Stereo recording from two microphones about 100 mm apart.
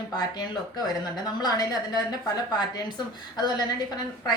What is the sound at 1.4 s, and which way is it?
Speech, 45° left (ahead or behind).